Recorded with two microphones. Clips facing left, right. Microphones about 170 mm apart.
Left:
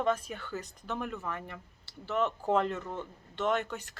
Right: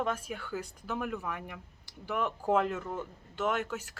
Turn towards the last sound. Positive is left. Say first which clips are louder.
# left 1 dB
turn(degrees=-5)  # may be behind; listen again after turning